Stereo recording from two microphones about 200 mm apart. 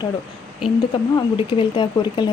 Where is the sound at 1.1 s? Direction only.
25° left (ahead or behind).